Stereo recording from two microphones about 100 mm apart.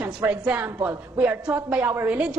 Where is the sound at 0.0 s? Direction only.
10° right (ahead or behind).